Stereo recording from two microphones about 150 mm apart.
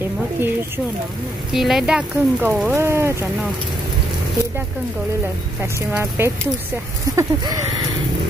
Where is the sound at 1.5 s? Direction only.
Centre (ahead or behind); by 3.1 s 15° right (ahead or behind).